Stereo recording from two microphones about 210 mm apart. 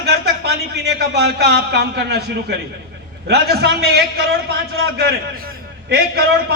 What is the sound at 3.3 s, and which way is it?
A man's voice, 50° right (ahead or behind).